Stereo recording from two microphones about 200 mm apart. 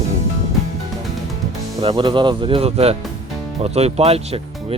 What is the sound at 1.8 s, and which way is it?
Speech, 25° right (ahead or behind).